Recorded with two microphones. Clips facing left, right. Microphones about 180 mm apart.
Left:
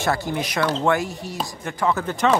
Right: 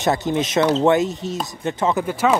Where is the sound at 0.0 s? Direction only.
20° right (ahead or behind).